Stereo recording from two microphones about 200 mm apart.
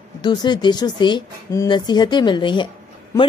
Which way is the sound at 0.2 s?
20° left (ahead or behind).